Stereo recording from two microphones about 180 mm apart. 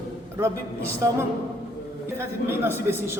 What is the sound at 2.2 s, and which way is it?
Speech, 15° right (ahead or behind).